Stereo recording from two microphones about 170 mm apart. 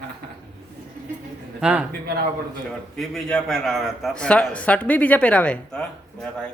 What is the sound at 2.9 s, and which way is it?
A man's voice, 5° left (ahead or behind).